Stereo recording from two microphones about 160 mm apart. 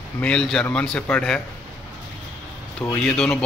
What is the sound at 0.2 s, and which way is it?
A man's voice, 5° left (ahead or behind).